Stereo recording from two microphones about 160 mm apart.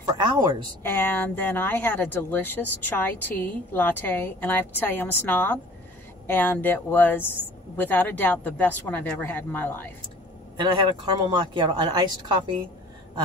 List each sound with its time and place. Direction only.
0.8 s speech: 15° left (ahead or behind)
10.6 s speech: 30° right (ahead or behind)